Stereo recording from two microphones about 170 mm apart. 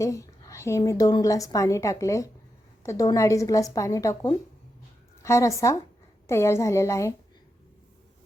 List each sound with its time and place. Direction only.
0.0 s a woman's voice: 20° left (ahead or behind)